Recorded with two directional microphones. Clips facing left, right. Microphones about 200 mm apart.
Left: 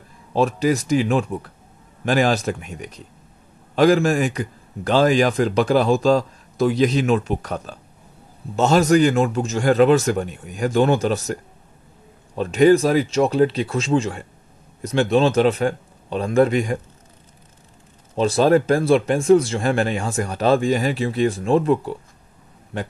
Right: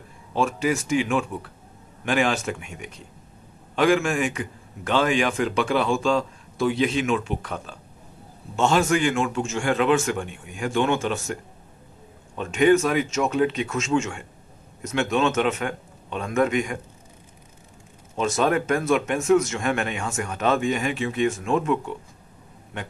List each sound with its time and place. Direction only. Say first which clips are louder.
0.3 s a man's voice: left 5 dB; 35° left (ahead or behind)
12.4 s a man's voice: left 4 dB; 35° left (ahead or behind)
18.1 s a man's voice: left 6 dB; 35° left (ahead or behind)